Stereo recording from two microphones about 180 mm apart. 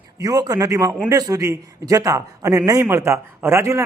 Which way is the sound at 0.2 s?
20° right (ahead or behind).